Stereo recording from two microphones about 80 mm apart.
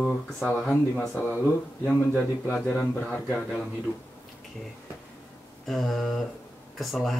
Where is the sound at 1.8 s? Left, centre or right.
Left.